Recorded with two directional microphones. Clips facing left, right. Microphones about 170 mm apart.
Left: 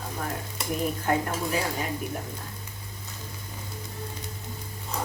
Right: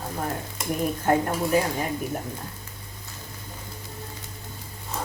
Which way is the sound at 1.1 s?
45° right (ahead or behind).